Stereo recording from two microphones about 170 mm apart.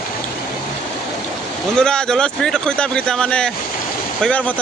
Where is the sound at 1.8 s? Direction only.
5° left (ahead or behind).